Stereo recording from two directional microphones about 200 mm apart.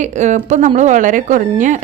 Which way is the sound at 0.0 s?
35° right (ahead or behind).